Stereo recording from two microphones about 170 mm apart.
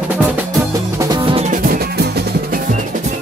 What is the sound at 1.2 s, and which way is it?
Music, 35° right (ahead or behind).